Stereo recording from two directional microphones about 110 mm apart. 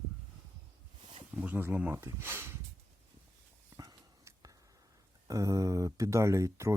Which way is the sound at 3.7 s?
30° right (ahead or behind).